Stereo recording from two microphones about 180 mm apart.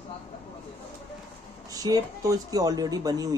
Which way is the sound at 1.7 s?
20° right (ahead or behind).